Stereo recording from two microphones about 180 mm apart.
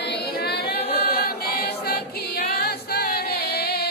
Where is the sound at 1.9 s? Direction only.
60° left (ahead or behind).